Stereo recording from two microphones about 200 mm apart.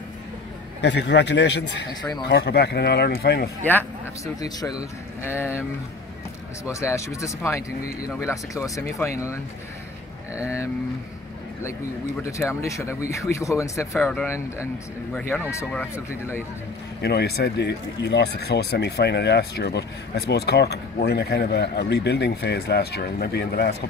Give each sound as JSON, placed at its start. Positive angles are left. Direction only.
{"t": 0.7, "sound": "speech", "side_deg": 60}
{"t": 4.4, "sound": "speech", "side_deg": 20}
{"t": 12.2, "sound": "speech", "side_deg": 15}
{"t": 17.0, "sound": "speech", "side_deg": 55}